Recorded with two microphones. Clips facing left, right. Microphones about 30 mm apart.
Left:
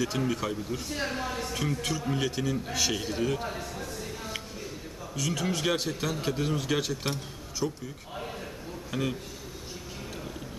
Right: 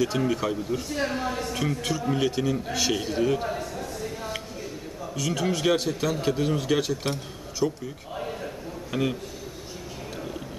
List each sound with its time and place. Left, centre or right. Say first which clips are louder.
0.0 s a man's voice: right 4 dB; centre
7.6 s a man's voice: right 6 dB; centre
8.2 s a sound: right 5 dB; centre
8.9 s a man's voice: right 5 dB; centre